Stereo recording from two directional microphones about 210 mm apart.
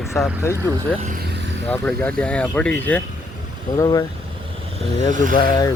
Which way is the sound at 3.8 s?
20° left (ahead or behind).